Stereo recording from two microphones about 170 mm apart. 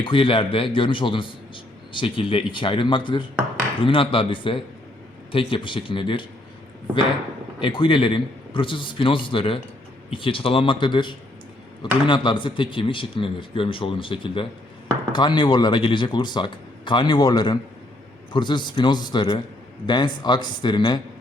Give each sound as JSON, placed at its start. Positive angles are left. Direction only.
{"t": 0.0, "sound": "a man's voice", "side_deg": 30}
{"t": 7.6, "sound": "speech", "side_deg": 30}